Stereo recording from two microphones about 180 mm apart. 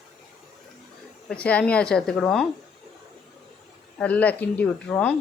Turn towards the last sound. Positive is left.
turn(degrees=10)  # may be behind; listen again after turning